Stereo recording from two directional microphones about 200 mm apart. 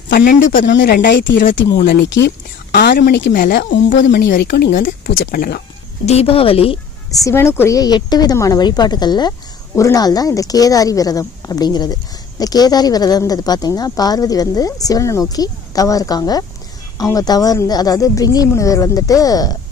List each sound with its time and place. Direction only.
0.1 s speech: 45° left (ahead or behind)
0.7 s speech: 55° left (ahead or behind)
3.7 s speech: 65° left (ahead or behind)
4.2 s speech: 50° left (ahead or behind)
6.0 s speech: 30° left (ahead or behind)
7.2 s speech: 15° left (ahead or behind)